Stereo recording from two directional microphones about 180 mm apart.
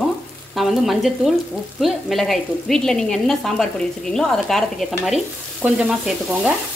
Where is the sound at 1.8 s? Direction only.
Centre (ahead or behind).